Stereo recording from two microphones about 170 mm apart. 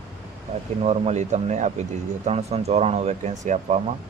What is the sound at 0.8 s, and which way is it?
Speech, 40° right (ahead or behind).